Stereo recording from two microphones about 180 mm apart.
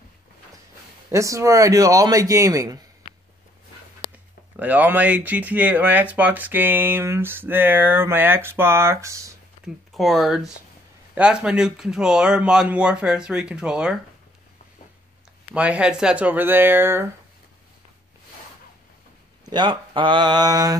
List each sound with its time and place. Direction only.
1.1 s speech: 15° right (ahead or behind)
4.6 s speech: 10° right (ahead or behind)
9.9 s speech: centre (ahead or behind)
15.5 s speech: 5° right (ahead or behind)
19.4 s speech: 25° right (ahead or behind)